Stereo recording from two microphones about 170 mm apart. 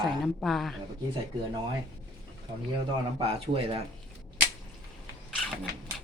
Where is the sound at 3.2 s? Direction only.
35° right (ahead or behind).